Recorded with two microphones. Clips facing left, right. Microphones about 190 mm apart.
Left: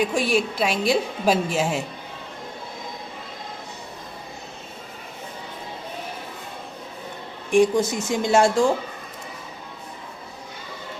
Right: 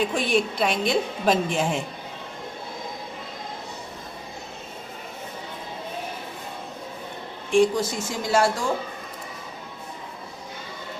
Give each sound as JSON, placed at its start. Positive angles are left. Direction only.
{"t": 0.0, "sound": "a woman's voice", "side_deg": 10}
{"t": 7.5, "sound": "speech", "side_deg": 20}